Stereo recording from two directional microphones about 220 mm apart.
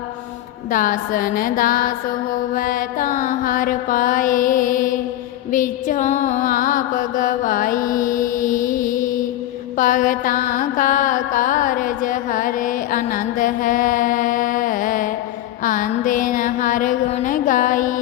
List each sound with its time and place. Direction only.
0.7 s mantra: 40° left (ahead or behind)
15.6 s music: 35° left (ahead or behind)